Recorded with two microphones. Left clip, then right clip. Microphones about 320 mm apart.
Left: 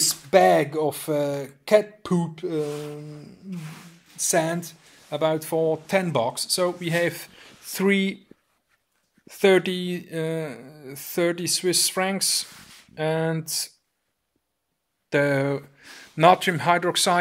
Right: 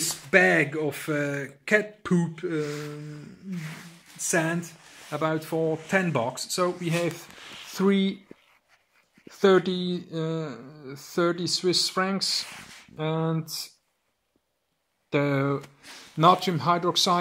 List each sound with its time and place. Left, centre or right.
0.0 s speech: centre
4.3 s speech: centre
9.3 s speech: left
15.0 s speech: left